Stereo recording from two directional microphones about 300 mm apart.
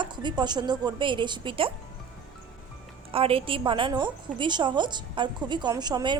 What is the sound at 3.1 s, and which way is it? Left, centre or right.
A woman's voice, centre.